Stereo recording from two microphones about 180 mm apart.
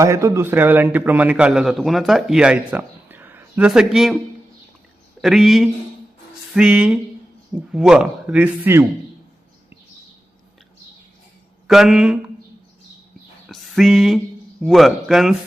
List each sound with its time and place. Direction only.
0.0 s a man's voice: 15° right (ahead or behind)
5.2 s a man's voice: centre (ahead or behind)
11.7 s speech: centre (ahead or behind)
13.5 s a sound: centre (ahead or behind)
14.6 s speech: centre (ahead or behind)